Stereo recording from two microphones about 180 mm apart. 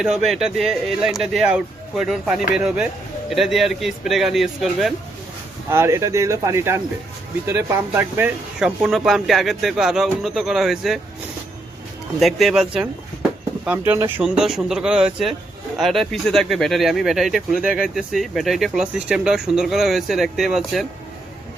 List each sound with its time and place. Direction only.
0.0 s speech: centre (ahead or behind)
5.7 s speech: 15° right (ahead or behind)
12.2 s speech: centre (ahead or behind)
13.7 s speech: 10° right (ahead or behind)
14.3 s speech: centre (ahead or behind)